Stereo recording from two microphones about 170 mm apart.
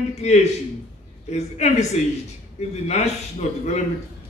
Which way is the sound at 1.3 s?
40° left (ahead or behind).